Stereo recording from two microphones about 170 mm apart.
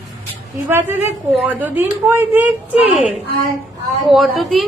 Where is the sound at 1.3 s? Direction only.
5° right (ahead or behind).